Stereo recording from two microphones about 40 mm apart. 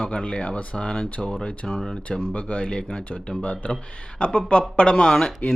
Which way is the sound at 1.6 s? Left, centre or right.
Centre.